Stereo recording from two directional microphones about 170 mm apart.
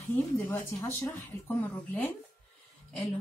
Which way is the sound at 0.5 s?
15° left (ahead or behind).